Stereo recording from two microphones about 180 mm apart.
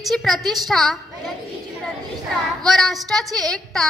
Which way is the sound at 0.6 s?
Centre (ahead or behind).